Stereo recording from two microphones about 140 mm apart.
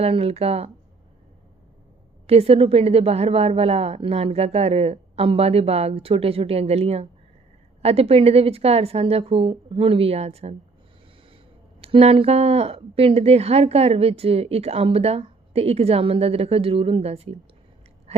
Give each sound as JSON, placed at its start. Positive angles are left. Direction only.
{"t": 0.0, "sound": "a woman's voice", "side_deg": -45}
{"t": 2.2, "sound": "a woman's voice", "side_deg": -45}
{"t": 11.8, "sound": "a woman's voice", "side_deg": -45}